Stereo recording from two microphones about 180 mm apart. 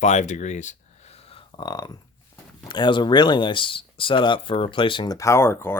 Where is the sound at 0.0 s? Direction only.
40° left (ahead or behind); by 1.9 s 25° left (ahead or behind).